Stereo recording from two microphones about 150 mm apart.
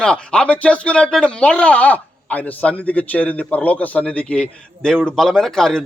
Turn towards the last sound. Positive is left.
turn(degrees=5)  # may be behind; listen again after turning